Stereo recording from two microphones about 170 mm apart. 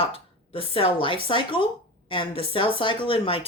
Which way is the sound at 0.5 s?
35° left (ahead or behind).